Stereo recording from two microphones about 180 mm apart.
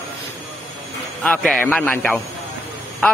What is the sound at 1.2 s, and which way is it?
Speech, 5° left (ahead or behind).